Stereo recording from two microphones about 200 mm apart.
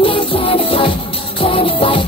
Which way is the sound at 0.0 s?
25° left (ahead or behind).